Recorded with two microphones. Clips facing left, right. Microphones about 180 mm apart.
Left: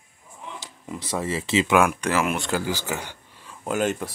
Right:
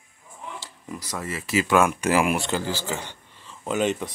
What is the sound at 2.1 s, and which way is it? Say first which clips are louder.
Speech: right 2 dB; 10° right (ahead or behind).